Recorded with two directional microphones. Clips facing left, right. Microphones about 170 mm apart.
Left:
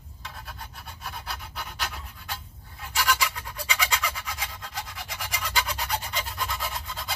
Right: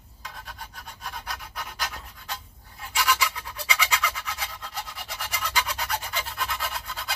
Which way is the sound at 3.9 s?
10° left (ahead or behind).